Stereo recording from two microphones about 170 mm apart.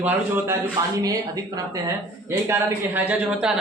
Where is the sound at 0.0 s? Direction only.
10° right (ahead or behind).